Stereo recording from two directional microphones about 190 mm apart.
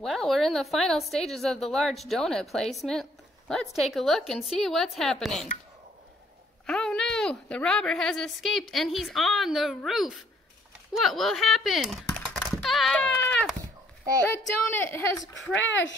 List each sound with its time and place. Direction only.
0.0 s a woman's voice: centre (ahead or behind)
6.6 s a woman's voice: 5° left (ahead or behind)
12.6 s goat: centre (ahead or behind)
14.4 s speech: 10° left (ahead or behind)
15.6 s speech: 75° left (ahead or behind)